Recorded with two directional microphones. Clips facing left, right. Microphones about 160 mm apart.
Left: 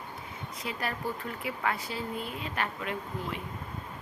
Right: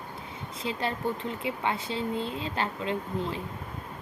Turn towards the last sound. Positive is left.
turn(degrees=-25)  # may be behind; listen again after turning